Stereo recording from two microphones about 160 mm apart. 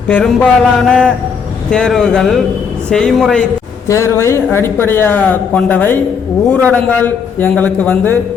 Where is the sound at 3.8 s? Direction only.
20° left (ahead or behind).